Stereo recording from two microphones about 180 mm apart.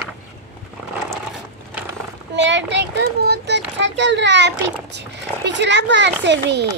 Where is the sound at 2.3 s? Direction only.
80° right.